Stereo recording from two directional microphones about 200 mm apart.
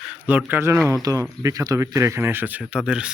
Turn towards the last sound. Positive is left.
turn(degrees=-5)  # may be behind; listen again after turning